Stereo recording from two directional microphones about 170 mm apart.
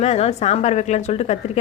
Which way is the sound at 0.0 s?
40° left (ahead or behind).